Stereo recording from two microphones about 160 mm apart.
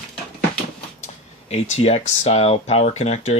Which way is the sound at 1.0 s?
40° left (ahead or behind).